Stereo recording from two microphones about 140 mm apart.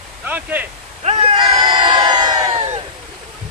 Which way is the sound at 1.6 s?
30° right (ahead or behind).